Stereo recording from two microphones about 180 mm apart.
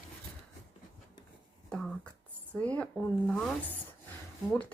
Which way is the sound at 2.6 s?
5° left (ahead or behind).